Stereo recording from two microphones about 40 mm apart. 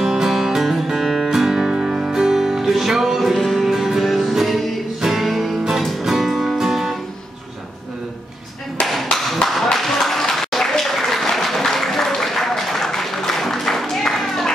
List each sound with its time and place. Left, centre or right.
0.0 s music: centre
3.3 s music: centre
3.6 s music: centre
9.1 s tap: centre
9.8 s applause: centre